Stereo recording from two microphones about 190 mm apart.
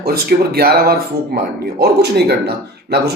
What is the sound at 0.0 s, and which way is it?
Speech, 55° right (ahead or behind).